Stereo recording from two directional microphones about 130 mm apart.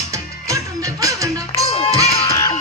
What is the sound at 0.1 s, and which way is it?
Music, 25° right (ahead or behind).